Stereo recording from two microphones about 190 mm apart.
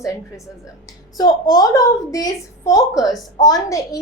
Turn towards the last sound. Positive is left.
turn(degrees=15)  # may be behind; listen again after turning